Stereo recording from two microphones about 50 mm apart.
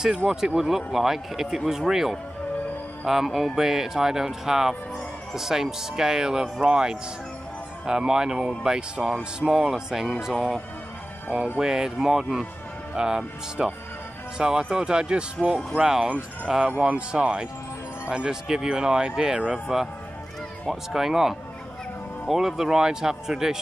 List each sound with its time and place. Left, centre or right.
0.0 s speech: centre
16.8 s speech: right; by 19.9 s centre
20.9 s speech: centre